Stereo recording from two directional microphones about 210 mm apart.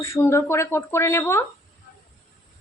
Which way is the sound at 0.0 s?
15° left (ahead or behind).